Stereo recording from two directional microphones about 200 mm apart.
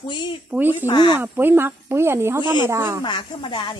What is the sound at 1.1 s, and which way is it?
Speech, 10° right (ahead or behind).